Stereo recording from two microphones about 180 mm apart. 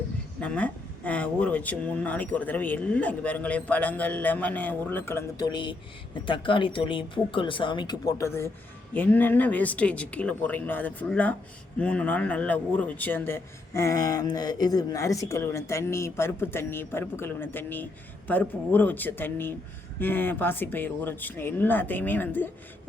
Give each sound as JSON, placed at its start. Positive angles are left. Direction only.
{"t": 0.3, "sound": "a man's voice", "side_deg": 5}
{"t": 5.5, "sound": "a man's voice", "side_deg": 25}